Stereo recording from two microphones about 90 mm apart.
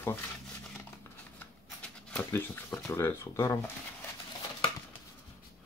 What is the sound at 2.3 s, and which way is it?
Speech, 25° left (ahead or behind).